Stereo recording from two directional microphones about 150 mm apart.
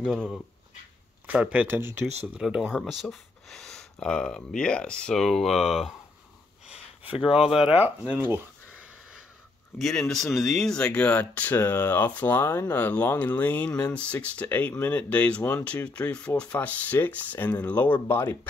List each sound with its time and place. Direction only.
0.0 s speech: centre (ahead or behind)
6.7 s speech: 35° left (ahead or behind)
7.7 s speech: 10° right (ahead or behind)
9.8 s speech: centre (ahead or behind)